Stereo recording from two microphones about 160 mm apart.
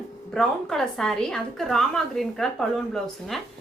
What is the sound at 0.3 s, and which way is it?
A woman's voice, centre (ahead or behind).